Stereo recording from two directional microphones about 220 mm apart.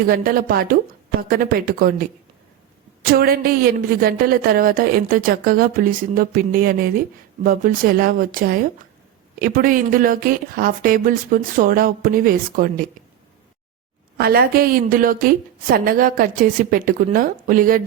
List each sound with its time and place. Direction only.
0.0 s a woman's voice: 40° right (ahead or behind)
14.2 s a woman's voice: 45° right (ahead or behind)